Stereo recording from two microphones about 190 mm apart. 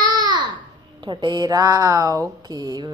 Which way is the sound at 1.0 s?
25° right (ahead or behind).